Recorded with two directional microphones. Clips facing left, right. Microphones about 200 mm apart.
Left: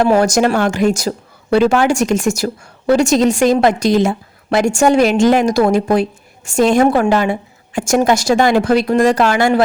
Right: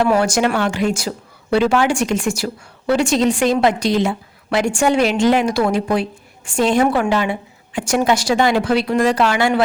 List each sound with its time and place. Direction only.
0.2 s speech: 40° left (ahead or behind)